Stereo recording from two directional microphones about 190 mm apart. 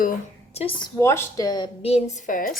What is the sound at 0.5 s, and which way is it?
Speech, 30° left (ahead or behind).